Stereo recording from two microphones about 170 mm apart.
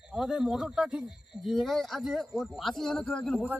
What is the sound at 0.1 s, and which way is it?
A man's voice, centre (ahead or behind).